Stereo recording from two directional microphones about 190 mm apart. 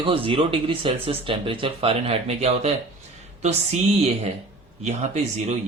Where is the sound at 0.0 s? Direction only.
30° right (ahead or behind).